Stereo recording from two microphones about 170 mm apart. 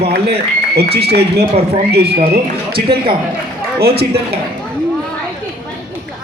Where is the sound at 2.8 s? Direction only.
30° right (ahead or behind).